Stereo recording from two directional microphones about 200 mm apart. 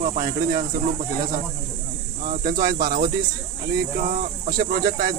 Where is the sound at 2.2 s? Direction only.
40° right (ahead or behind).